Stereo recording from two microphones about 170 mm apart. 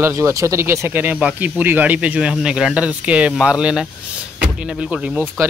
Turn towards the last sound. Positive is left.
turn(degrees=-10)  # may be behind; listen again after turning